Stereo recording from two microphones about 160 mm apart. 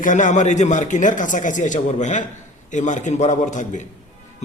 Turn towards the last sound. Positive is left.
turn(degrees=45)  # may be behind; listen again after turning